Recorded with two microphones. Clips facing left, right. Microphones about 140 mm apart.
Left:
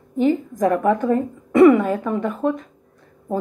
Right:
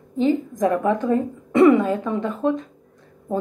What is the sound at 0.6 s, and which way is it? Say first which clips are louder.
A woman's voice: left 4 dB; 20° right (ahead or behind).